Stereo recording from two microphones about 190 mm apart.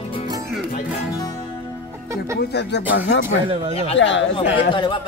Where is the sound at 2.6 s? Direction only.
65° left (ahead or behind).